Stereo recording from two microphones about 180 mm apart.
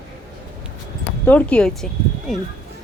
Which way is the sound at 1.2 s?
10° left (ahead or behind).